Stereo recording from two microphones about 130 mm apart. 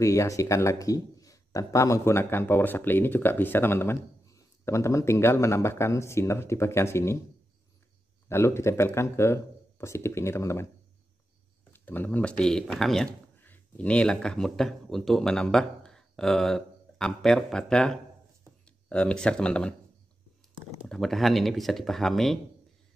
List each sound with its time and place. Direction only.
0.0 s speech: 25° left (ahead or behind)
8.3 s speech: 20° left (ahead or behind)
11.7 s speech: 15° left (ahead or behind)
20.9 s speech: centre (ahead or behind)